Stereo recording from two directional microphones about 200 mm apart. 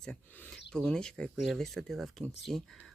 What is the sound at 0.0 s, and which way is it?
Speech, 5° left (ahead or behind).